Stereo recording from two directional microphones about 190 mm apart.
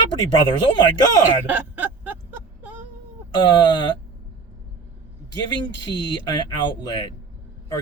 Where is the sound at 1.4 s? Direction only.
10° right (ahead or behind).